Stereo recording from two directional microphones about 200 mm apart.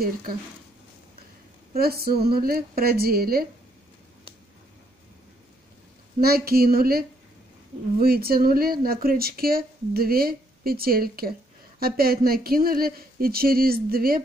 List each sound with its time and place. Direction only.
1.7 s speech: 50° right (ahead or behind)
6.2 s speech: 50° right (ahead or behind)